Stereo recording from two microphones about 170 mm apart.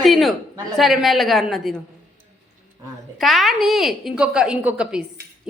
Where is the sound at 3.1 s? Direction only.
Centre (ahead or behind).